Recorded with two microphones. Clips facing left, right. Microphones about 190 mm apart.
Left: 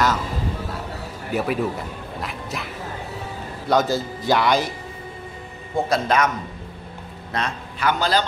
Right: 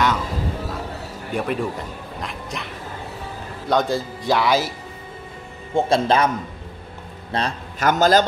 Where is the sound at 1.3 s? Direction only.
5° left (ahead or behind).